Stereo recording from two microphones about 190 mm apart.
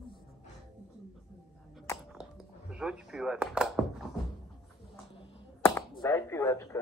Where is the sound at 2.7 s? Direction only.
5° right (ahead or behind).